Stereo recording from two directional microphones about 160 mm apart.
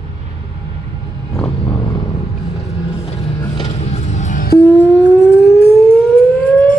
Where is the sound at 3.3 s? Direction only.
35° left (ahead or behind); by 4.5 s 55° left (ahead or behind).